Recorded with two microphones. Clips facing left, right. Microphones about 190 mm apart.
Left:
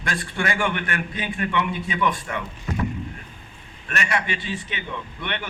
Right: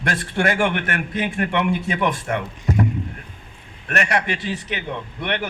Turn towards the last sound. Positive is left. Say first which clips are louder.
# right 5 dB
turn(degrees=-70)  # may be behind; listen again after turning